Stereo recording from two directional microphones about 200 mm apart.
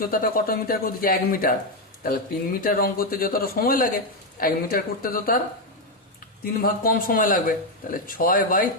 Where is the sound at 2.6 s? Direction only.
45° left (ahead or behind).